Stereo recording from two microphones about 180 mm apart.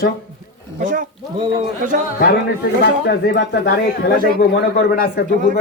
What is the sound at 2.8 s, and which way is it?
Speech, 80° left.